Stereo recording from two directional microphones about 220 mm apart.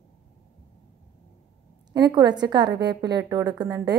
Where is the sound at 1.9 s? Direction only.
20° right (ahead or behind).